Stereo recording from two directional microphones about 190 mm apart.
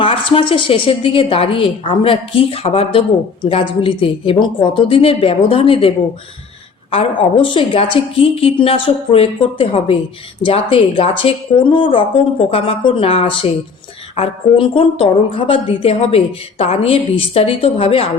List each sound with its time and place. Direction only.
0.0 s speech: 25° left (ahead or behind)
7.4 s a woman's voice: 25° left (ahead or behind)